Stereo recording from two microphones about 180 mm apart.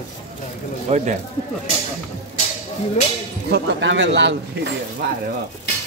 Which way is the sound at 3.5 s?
90° right.